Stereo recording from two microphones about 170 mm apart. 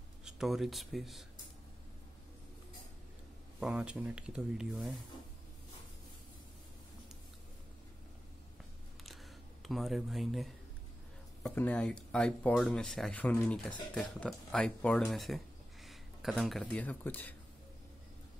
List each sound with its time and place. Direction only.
0.2 s speech: 5° right (ahead or behind)
3.5 s speech: 5° right (ahead or behind)
9.0 s camera: centre (ahead or behind)
11.4 s speech: 5° left (ahead or behind)